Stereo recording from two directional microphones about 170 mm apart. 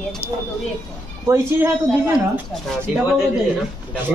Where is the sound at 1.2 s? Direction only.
15° right (ahead or behind).